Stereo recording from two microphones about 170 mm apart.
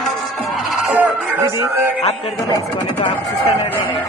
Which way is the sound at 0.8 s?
5° right (ahead or behind).